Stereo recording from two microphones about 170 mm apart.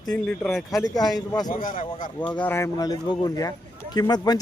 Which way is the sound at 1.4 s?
55° left (ahead or behind).